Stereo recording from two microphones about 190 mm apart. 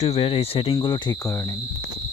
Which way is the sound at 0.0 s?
30° left (ahead or behind).